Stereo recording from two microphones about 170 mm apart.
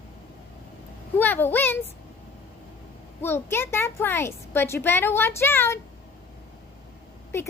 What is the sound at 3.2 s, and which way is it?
A woman's voice, 15° left (ahead or behind).